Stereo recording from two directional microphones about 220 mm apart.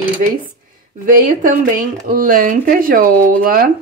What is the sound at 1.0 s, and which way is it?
Speech, 35° right (ahead or behind).